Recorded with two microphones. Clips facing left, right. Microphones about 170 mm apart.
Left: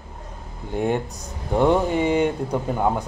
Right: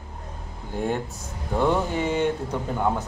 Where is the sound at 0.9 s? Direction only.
15° left (ahead or behind).